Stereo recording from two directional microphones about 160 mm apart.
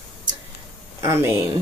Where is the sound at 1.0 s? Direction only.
15° right (ahead or behind).